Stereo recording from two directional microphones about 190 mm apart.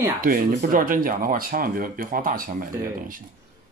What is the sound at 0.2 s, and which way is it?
Speech, 50° right (ahead or behind).